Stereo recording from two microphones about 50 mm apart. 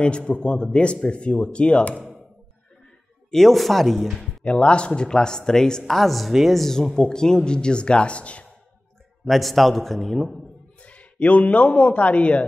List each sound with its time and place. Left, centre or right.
0.2 s speech: centre
3.3 s speech: centre
4.5 s speech: left
9.2 s speech: centre
10.8 s speech: left